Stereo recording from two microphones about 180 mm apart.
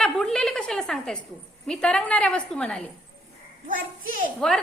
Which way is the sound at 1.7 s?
5° left (ahead or behind).